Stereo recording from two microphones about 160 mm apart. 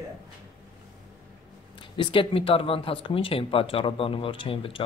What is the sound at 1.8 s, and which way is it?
Speech, 30° left (ahead or behind).